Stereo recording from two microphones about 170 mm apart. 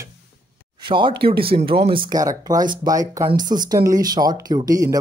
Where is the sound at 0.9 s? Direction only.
30° right (ahead or behind).